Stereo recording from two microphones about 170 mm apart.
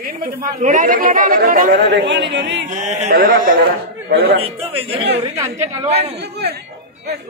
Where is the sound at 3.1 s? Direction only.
55° right (ahead or behind).